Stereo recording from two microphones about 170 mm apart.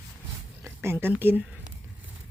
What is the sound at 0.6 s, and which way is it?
Speech, 15° right (ahead or behind).